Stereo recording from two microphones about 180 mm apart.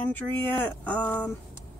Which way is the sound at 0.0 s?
10° left (ahead or behind).